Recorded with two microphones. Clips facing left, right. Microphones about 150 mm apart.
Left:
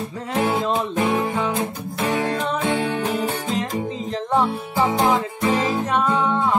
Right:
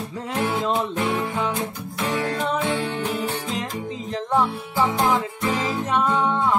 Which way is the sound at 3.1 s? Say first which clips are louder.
Left 3 dB; 45° left (ahead or behind).